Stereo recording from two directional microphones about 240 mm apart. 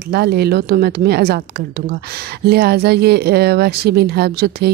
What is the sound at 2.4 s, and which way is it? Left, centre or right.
Speech, right.